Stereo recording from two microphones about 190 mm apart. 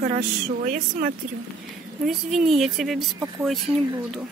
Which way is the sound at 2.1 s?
Centre (ahead or behind).